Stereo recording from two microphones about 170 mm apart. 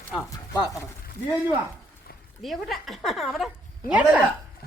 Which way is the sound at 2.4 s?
Centre (ahead or behind).